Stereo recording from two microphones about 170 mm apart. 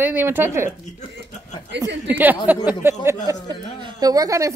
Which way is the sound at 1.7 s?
90° right.